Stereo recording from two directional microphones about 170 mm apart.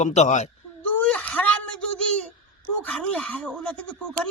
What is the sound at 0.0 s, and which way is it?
Speech, 40° left (ahead or behind).